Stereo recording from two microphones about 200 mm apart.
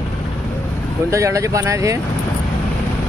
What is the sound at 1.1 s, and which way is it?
Speech, 15° right (ahead or behind).